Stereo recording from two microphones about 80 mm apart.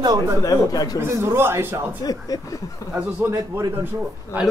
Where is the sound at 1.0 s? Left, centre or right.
Right.